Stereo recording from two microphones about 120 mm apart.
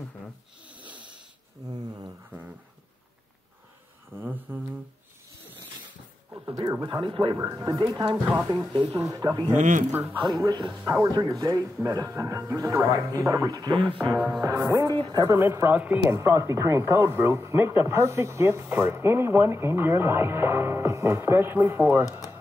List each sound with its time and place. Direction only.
4.1 s humming: 15° right (ahead or behind)
6.4 s speech: 35° right (ahead or behind)
7.3 s speech: 30° right (ahead or behind)
8.4 s speech: 25° right (ahead or behind)
8.7 s speech: 45° right (ahead or behind)
9.1 s speech: 35° right (ahead or behind)
9.6 s speech: 90° right
10.1 s speech: 35° right (ahead or behind); by 22.0 s 20° right (ahead or behind)